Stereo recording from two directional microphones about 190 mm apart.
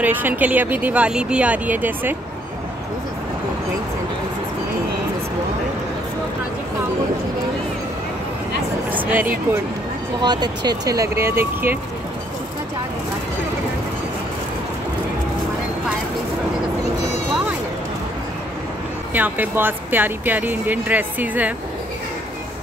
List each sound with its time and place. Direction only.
0.0 s speech: 10° right (ahead or behind)
8.9 s a sound: 10° right (ahead or behind)
10.2 s speech: 20° right (ahead or behind)
19.1 s speech: 10° right (ahead or behind)